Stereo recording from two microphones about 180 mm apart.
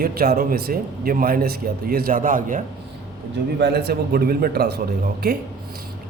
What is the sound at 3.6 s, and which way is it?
A man's voice, 65° right (ahead or behind).